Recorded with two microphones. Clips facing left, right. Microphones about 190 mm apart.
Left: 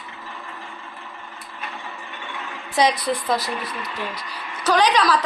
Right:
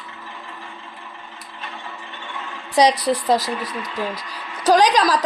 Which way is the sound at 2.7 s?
35° right (ahead or behind).